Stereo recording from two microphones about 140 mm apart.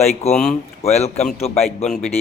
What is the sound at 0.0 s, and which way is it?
A man's voice, 50° left (ahead or behind).